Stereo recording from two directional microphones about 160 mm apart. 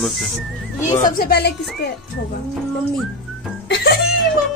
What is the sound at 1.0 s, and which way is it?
Speech, 70° left (ahead or behind).